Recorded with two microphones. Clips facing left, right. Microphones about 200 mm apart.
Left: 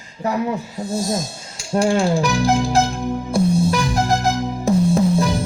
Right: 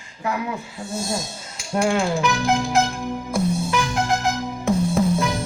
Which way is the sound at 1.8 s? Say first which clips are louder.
Left 3 dB; 35° left (ahead or behind).